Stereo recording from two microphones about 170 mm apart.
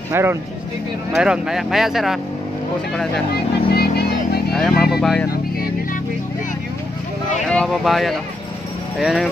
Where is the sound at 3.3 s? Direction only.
70° left (ahead or behind).